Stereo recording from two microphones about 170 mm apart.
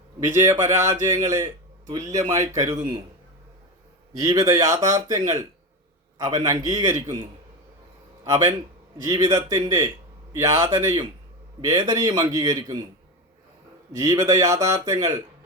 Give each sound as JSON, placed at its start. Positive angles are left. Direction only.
{"t": 0.3, "sound": "a man's voice", "side_deg": -15}
{"t": 4.2, "sound": "speech", "side_deg": -20}
{"t": 6.2, "sound": "a man's voice", "side_deg": -20}
{"t": 13.9, "sound": "speech", "side_deg": -20}